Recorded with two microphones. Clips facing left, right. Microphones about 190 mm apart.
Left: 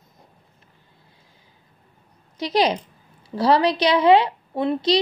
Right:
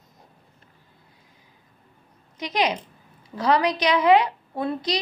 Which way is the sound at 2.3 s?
30° left (ahead or behind).